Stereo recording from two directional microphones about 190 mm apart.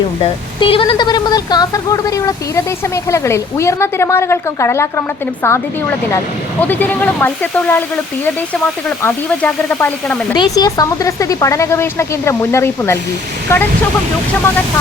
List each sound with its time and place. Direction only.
0.2 s speech: 25° left (ahead or behind)
6.6 s speech: 10° left (ahead or behind)
10.3 s speech: 20° left (ahead or behind)